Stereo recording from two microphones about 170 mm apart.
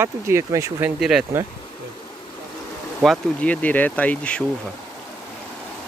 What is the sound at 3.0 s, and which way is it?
Speech, 5° left (ahead or behind).